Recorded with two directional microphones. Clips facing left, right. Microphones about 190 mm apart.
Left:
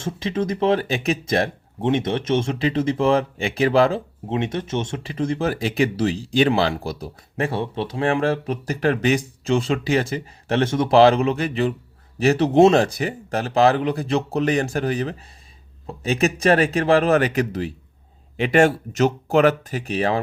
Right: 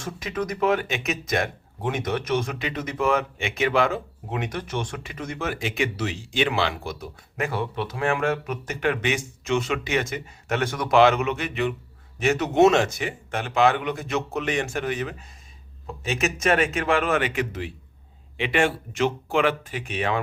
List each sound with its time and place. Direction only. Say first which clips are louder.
0.0 s speech: left 5 dB; 25° left (ahead or behind)